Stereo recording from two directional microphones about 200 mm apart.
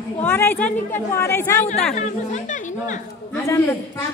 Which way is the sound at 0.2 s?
10° left (ahead or behind).